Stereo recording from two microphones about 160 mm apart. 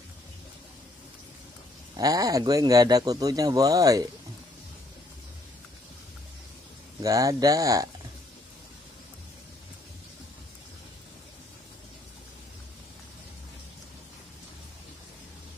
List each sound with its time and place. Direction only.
2.0 s speech: 25° right (ahead or behind)
7.0 s speech: 20° right (ahead or behind)